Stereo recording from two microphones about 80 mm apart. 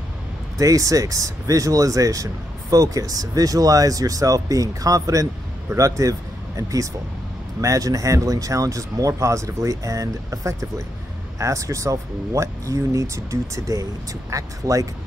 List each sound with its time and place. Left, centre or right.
0.6 s speech: right